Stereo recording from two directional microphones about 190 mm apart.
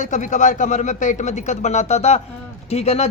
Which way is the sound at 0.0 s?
40° left (ahead or behind).